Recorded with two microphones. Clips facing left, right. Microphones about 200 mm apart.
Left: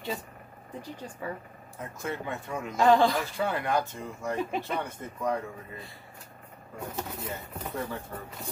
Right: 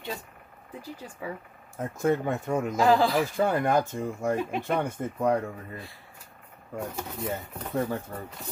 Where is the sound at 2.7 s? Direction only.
5° right (ahead or behind).